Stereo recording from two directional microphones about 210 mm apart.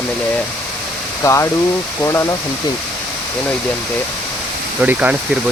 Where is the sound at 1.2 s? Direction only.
15° left (ahead or behind).